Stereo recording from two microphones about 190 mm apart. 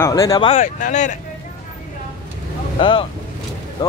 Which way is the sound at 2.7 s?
25° left (ahead or behind).